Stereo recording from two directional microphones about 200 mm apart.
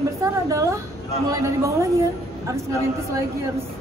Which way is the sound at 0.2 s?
15° right (ahead or behind).